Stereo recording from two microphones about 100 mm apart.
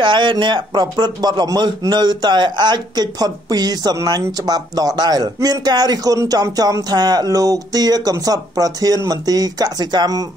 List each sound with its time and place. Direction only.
0.0 s a man's voice: 55° right (ahead or behind)